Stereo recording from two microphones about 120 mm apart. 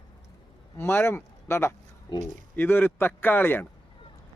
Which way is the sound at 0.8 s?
20° left (ahead or behind).